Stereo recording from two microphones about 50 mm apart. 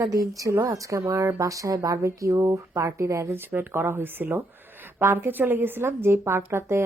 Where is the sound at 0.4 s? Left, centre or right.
Right.